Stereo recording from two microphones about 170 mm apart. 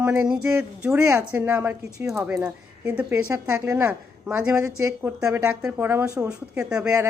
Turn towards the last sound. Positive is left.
turn(degrees=-10)  # may be behind; listen again after turning